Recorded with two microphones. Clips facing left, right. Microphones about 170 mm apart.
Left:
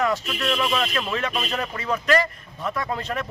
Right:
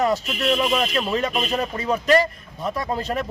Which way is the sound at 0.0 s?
35° right (ahead or behind).